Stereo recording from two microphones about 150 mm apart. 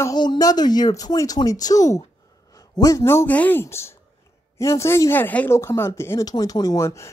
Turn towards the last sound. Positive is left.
turn(degrees=20)  # may be behind; listen again after turning